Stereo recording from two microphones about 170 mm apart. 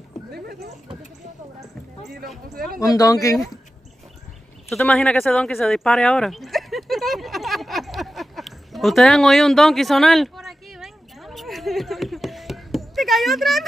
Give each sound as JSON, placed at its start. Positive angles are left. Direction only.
{"t": 0.3, "sound": "speech", "side_deg": -70}
{"t": 2.8, "sound": "speech", "side_deg": 20}
{"t": 4.6, "sound": "a sound", "side_deg": 5}